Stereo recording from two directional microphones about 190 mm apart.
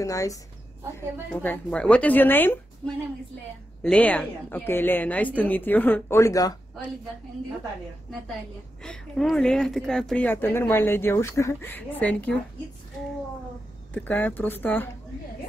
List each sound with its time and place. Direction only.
0.0 s speech: 15° left (ahead or behind)
8.8 s speech: 5° left (ahead or behind)
13.9 s speech: 10° left (ahead or behind)